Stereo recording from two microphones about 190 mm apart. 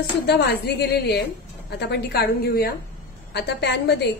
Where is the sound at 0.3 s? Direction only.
60° left (ahead or behind).